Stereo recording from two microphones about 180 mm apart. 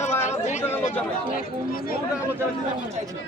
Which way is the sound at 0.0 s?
40° left (ahead or behind).